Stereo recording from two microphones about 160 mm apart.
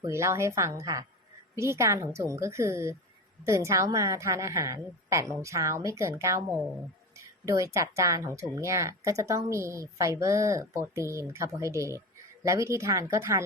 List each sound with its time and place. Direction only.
0.0 s a woman's voice: 15° right (ahead or behind)
7.4 s speech: 20° right (ahead or behind)